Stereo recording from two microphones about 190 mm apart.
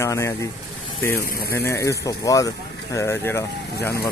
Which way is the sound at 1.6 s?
15° left (ahead or behind).